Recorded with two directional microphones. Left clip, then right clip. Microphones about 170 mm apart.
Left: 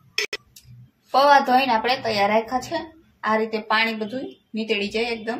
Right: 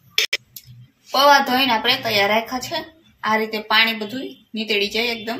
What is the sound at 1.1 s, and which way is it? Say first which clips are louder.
A woman's voice: right 1 dB; 30° left (ahead or behind).